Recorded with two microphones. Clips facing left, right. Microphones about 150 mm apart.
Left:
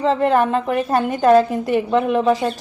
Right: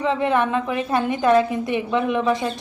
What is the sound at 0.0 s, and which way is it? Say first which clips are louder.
A woman's voice: left 4 dB; 40° left (ahead or behind).